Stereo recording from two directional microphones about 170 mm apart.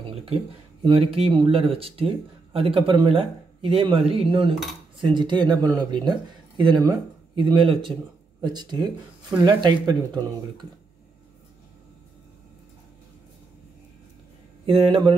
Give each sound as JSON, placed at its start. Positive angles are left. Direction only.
{"t": 0.0, "sound": "a sound", "side_deg": -35}
{"t": 0.8, "sound": "speech", "side_deg": -35}
{"t": 14.7, "sound": "speech", "side_deg": -30}